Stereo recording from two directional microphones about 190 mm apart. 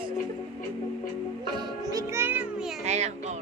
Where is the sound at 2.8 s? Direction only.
35° right (ahead or behind).